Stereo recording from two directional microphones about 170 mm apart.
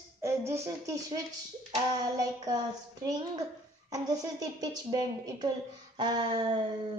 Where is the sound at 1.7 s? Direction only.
20° right (ahead or behind).